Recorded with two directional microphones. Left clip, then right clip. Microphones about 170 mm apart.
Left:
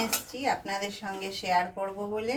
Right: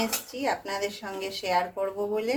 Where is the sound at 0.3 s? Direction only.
70° right (ahead or behind).